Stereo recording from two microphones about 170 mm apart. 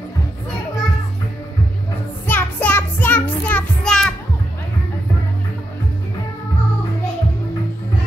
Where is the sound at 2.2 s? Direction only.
10° left (ahead or behind).